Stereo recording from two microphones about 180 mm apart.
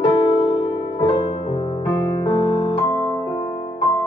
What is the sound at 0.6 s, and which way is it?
Music, 15° left (ahead or behind).